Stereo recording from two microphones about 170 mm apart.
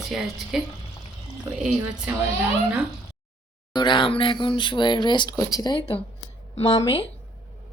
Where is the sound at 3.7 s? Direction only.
25° left (ahead or behind).